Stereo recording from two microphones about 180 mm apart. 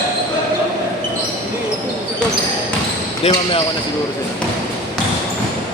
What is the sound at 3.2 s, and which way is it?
Speech, 35° left (ahead or behind).